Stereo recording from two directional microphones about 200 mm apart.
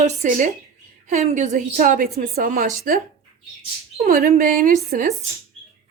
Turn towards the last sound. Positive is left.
turn(degrees=-45)  # may be behind; listen again after turning